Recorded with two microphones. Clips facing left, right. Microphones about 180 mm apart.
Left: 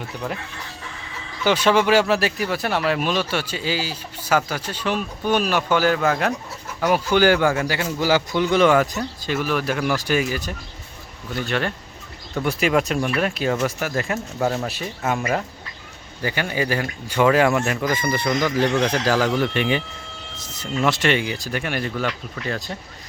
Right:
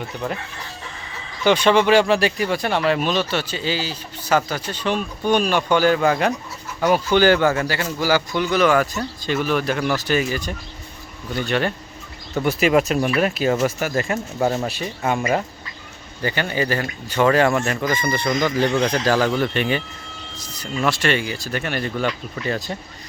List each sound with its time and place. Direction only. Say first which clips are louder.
1.5 s speech: right 2 dB; 5° left (ahead or behind)
9.2 s speech: right 2 dB; 5° left (ahead or behind)
16.2 s speech: right 1 dB; 10° left (ahead or behind)
20.4 s speech: left 1 dB; 25° left (ahead or behind); by 22.7 s centre (ahead or behind)